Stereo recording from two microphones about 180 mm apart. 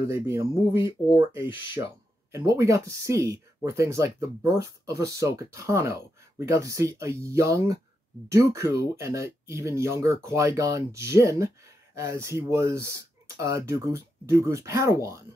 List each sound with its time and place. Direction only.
0.1 s speech: 15° right (ahead or behind)
2.3 s speech: 15° right (ahead or behind)